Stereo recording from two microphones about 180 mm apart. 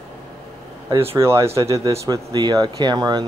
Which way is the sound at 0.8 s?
30° right (ahead or behind).